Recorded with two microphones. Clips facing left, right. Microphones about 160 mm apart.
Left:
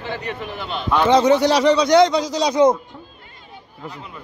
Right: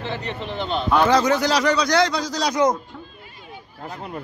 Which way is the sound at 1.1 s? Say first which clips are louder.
Left 4 dB; 25° left (ahead or behind).